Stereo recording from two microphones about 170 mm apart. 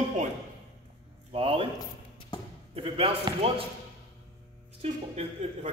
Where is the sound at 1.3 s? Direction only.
35° right (ahead or behind).